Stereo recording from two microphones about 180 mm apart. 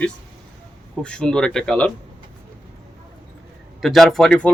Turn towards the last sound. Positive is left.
turn(degrees=5)  # may be behind; listen again after turning